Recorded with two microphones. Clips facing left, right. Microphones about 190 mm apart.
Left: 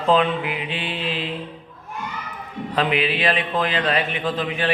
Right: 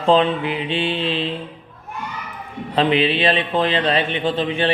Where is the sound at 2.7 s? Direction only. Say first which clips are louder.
Right 4 dB; 30° right (ahead or behind).